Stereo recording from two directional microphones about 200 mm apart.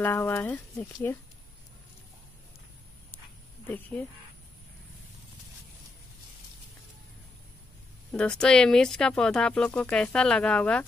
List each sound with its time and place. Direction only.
0.0 s speech: 10° left (ahead or behind)
3.6 s speech: 10° left (ahead or behind)
8.1 s speech: 5° left (ahead or behind)